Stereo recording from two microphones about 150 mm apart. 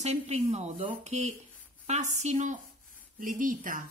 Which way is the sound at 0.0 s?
45° right (ahead or behind).